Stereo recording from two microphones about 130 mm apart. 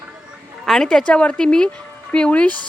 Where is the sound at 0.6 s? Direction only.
5° left (ahead or behind).